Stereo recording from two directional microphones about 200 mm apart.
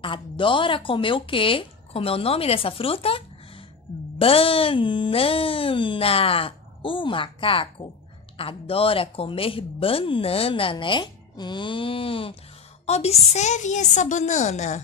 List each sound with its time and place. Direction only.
0.0 s a woman's voice: 25° left (ahead or behind)